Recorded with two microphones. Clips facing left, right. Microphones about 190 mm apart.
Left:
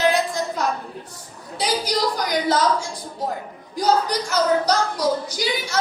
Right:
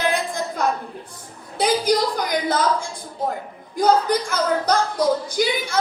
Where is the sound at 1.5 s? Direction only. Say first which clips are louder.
Right 5 dB; 55° right (ahead or behind).